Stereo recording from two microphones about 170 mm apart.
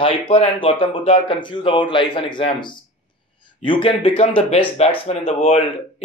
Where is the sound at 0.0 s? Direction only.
35° left (ahead or behind).